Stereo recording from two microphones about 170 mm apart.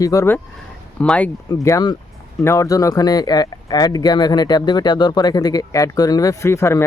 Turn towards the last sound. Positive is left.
turn(degrees=15)  # may be behind; listen again after turning